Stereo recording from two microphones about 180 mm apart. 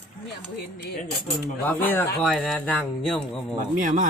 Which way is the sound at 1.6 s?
10° left (ahead or behind).